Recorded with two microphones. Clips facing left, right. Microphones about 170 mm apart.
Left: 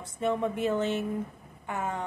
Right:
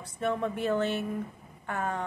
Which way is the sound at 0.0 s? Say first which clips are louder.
Left 2 dB; 15° left (ahead or behind).